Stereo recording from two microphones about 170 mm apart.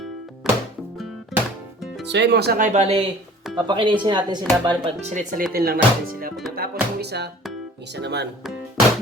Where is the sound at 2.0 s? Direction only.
90° right; by 2.6 s 75° right (ahead or behind).